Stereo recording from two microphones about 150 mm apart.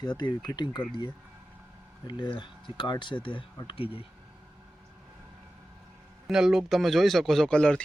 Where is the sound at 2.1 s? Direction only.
30° left (ahead or behind).